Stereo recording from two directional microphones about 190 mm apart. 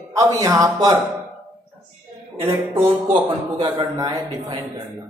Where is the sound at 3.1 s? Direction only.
25° right (ahead or behind).